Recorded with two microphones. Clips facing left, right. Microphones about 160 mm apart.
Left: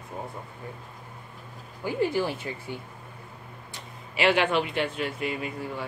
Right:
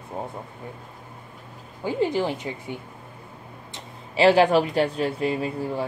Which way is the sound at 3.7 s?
30° right (ahead or behind).